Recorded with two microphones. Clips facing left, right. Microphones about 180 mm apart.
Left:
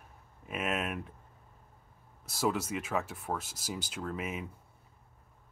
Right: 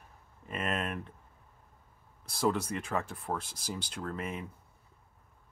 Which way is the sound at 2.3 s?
5° left (ahead or behind).